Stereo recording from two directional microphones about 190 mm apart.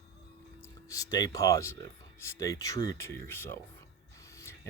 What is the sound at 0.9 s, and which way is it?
Speech, 20° left (ahead or behind).